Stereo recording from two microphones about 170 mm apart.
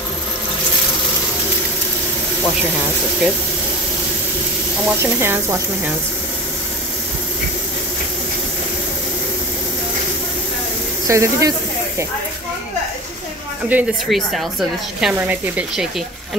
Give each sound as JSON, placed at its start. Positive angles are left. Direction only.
{"t": 4.8, "sound": "speech", "side_deg": -15}
{"t": 11.1, "sound": "speech", "side_deg": -20}
{"t": 13.7, "sound": "a woman's voice", "side_deg": -5}